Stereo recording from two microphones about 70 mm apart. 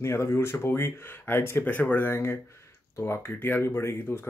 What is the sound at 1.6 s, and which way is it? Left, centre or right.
Speech, left.